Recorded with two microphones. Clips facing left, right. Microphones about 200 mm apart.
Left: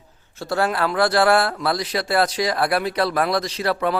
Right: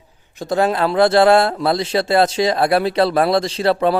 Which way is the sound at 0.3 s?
20° right (ahead or behind).